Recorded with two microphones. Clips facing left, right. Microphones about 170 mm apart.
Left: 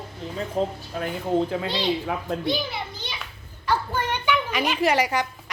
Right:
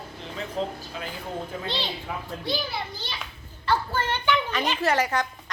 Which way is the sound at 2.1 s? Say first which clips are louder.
Left 5 dB; 90° left.